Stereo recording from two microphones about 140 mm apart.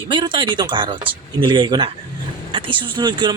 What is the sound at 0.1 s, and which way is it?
Speech, 35° right (ahead or behind).